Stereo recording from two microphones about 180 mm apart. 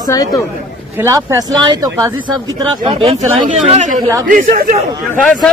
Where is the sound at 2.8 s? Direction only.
30° right (ahead or behind).